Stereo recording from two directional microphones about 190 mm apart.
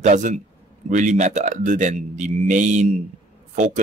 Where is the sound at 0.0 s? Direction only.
40° right (ahead or behind).